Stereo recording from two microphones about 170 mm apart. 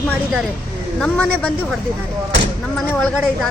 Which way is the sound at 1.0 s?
5° left (ahead or behind).